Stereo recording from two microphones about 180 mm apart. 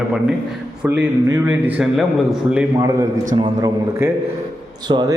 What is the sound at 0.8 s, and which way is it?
A man's voice, 15° right (ahead or behind).